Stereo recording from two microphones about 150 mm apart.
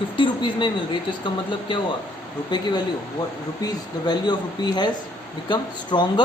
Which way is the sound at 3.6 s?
30° left (ahead or behind).